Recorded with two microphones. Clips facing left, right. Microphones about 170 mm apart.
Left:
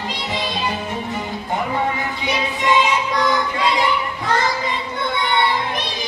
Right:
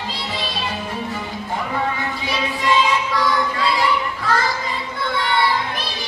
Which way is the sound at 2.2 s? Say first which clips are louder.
Left 2 dB; 20° left (ahead or behind).